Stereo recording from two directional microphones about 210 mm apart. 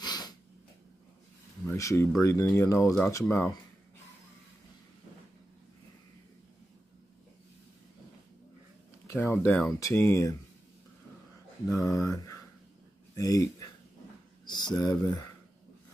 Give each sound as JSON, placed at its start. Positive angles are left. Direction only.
{"t": 0.0, "sound": "a sound", "side_deg": 20}
{"t": 1.7, "sound": "speech", "side_deg": 15}
{"t": 9.1, "sound": "speech", "side_deg": 10}
{"t": 11.7, "sound": "speech", "side_deg": 15}
{"t": 14.4, "sound": "a sound", "side_deg": 20}
{"t": 14.8, "sound": "speech", "side_deg": 15}